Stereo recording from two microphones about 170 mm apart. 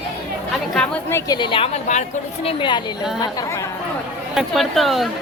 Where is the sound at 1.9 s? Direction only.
45° left (ahead or behind).